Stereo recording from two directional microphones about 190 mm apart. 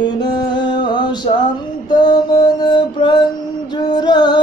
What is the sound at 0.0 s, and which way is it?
Music, 20° left (ahead or behind).